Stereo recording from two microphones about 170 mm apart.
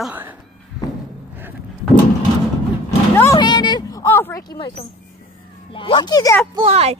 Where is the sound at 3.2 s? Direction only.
20° left (ahead or behind).